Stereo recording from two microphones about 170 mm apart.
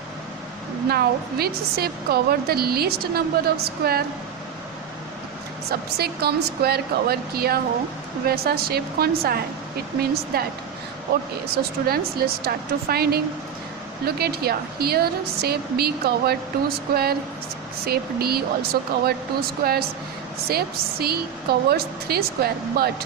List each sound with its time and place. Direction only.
0.9 s a woman's voice: 65° right (ahead or behind)
6.0 s a woman's voice: 65° right (ahead or behind)
11.5 s a woman's voice: 65° right (ahead or behind)